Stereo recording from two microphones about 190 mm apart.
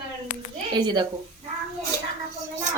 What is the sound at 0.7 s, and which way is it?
Speech, 20° right (ahead or behind).